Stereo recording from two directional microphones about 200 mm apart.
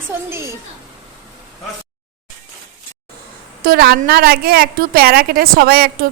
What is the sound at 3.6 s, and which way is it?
A woman's voice, 50° right (ahead or behind).